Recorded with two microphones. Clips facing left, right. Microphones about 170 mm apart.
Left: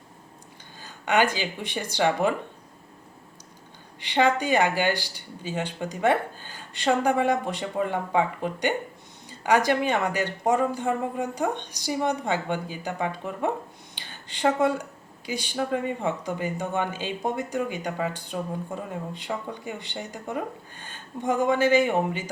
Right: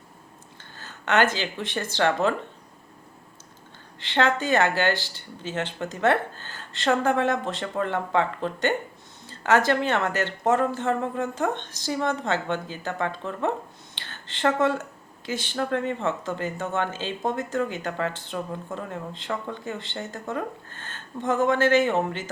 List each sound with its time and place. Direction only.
0.8 s speech: 15° left (ahead or behind)
4.0 s speech: 15° left (ahead or behind)
13.9 s a sound: 15° left (ahead or behind)
15.3 s speech: 15° left (ahead or behind)